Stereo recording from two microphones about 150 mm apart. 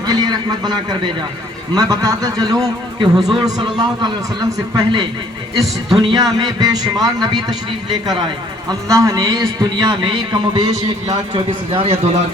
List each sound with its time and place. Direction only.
0.0 s a man's voice: 25° right (ahead or behind)
5.5 s speech: centre (ahead or behind)
6.0 s speech: 30° right (ahead or behind)
8.9 s speech: 20° right (ahead or behind); by 12.1 s 40° right (ahead or behind)